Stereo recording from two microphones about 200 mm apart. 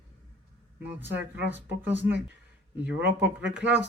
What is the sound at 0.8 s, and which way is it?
Speech, 10° right (ahead or behind).